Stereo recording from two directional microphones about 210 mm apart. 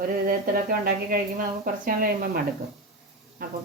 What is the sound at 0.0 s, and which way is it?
A woman's voice, 45° right (ahead or behind).